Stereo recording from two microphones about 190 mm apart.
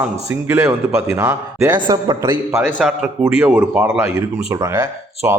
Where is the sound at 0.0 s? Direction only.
10° right (ahead or behind).